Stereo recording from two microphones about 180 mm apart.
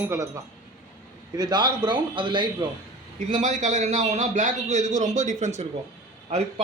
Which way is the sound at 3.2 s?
40° right (ahead or behind).